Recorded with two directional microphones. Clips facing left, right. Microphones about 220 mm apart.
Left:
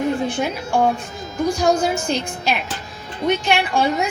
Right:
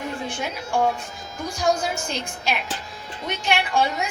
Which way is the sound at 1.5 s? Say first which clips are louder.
Left 2 dB; 35° left (ahead or behind).